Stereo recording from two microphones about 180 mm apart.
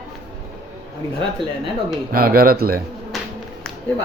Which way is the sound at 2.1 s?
55° right (ahead or behind).